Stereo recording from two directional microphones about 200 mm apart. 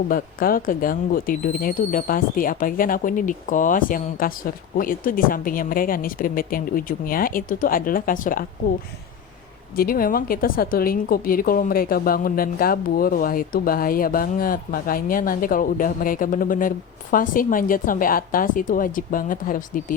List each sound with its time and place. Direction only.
0.1 s a woman's voice: 45° left (ahead or behind)
9.7 s a woman's voice: 45° left (ahead or behind)